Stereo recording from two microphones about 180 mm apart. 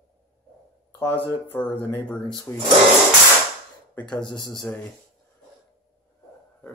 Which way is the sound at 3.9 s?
5° left (ahead or behind).